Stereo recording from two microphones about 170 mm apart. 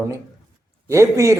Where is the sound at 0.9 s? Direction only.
15° right (ahead or behind).